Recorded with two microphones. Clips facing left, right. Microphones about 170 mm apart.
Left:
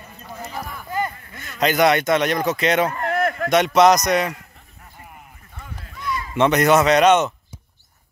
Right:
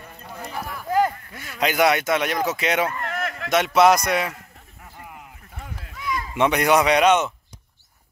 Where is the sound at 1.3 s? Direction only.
10° right (ahead or behind).